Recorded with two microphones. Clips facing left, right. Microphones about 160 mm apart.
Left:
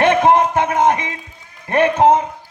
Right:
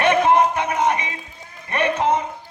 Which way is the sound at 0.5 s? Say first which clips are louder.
Left 5 dB; 90° left.